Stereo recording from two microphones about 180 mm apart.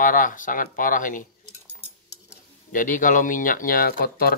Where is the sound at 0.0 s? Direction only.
45° left (ahead or behind).